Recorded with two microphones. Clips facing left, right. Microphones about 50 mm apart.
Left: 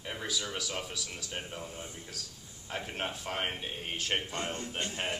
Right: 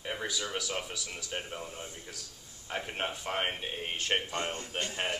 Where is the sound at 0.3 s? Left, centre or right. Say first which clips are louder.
Right 1 dB; centre; by 4.9 s right.